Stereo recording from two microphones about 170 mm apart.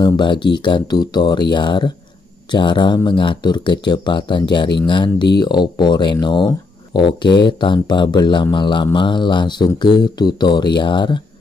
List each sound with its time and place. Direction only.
0.0 s speech: 30° left (ahead or behind)